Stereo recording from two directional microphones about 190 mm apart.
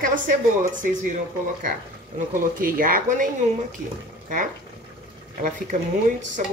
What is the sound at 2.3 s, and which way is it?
Speech, 50° right (ahead or behind).